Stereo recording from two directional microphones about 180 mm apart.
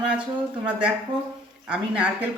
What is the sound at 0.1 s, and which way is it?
A woman's voice, 5° right (ahead or behind).